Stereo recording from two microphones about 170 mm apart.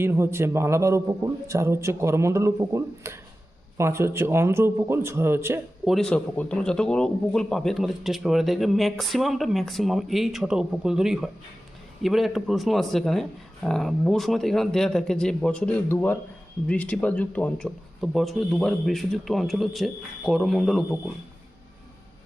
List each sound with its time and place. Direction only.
0.0 s a man's voice: 15° right (ahead or behind)
5.8 s a man's voice: centre (ahead or behind)